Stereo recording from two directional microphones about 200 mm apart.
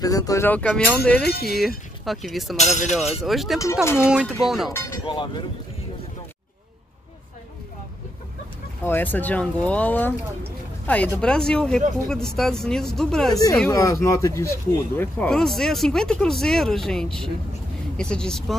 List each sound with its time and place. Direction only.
0.0 s speech: 20° left (ahead or behind)
1.2 s speech: 50° left (ahead or behind)
2.0 s speech: centre (ahead or behind)
2.5 s speech: 35° left (ahead or behind)
3.0 s speech: centre (ahead or behind)
5.0 s speech: 20° left (ahead or behind)
8.8 s speech: 10° left (ahead or behind)
11.1 s speech: 5° left (ahead or behind)
13.7 s speech: 15° left (ahead or behind)